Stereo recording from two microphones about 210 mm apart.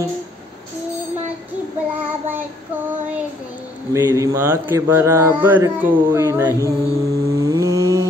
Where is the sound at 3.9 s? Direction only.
15° right (ahead or behind).